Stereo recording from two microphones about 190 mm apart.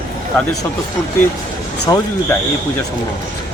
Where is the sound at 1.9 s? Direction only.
15° left (ahead or behind).